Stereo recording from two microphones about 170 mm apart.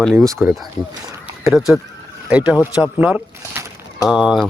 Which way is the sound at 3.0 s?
10° right (ahead or behind).